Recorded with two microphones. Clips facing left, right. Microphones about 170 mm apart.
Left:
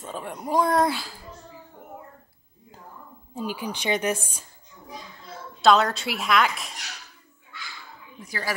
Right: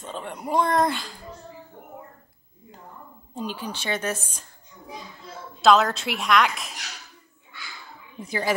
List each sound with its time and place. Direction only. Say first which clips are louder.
0.0 s speech: even; 5° left (ahead or behind)
3.3 s a woman's voice: left 1 dB; 10° left (ahead or behind)
5.6 s speech: right 1 dB; centre (ahead or behind)
8.2 s a woman's voice: right 6 dB; 20° right (ahead or behind)